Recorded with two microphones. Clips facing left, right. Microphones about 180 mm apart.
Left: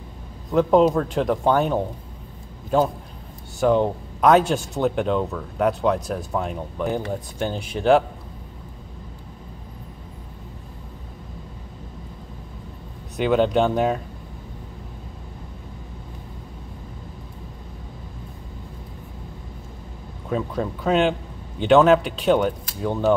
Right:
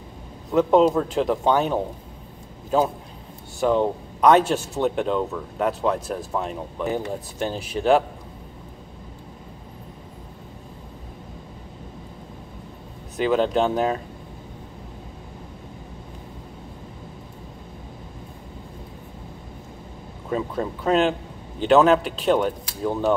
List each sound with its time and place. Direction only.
0.5 s speech: centre (ahead or behind)
3.5 s speech: centre (ahead or behind)
13.1 s speech: centre (ahead or behind)
20.2 s speech: centre (ahead or behind)